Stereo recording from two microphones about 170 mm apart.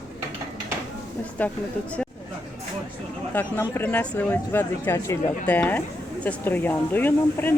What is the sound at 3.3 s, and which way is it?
Speech, 10° left (ahead or behind).